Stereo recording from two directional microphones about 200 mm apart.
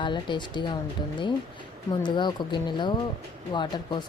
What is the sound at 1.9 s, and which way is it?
Speech, 20° left (ahead or behind).